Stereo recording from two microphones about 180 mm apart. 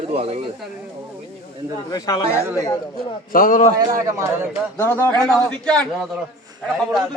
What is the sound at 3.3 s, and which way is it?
Speech, 50° left (ahead or behind).